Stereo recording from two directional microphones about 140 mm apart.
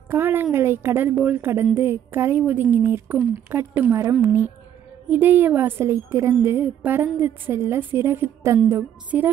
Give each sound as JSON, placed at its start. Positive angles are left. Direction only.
{"t": 0.1, "sound": "a woman's voice", "side_deg": -15}